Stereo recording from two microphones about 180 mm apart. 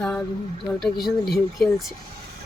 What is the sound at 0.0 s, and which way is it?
Speech, 5° left (ahead or behind).